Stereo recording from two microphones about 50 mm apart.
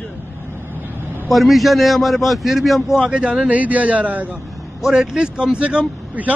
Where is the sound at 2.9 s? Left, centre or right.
Centre.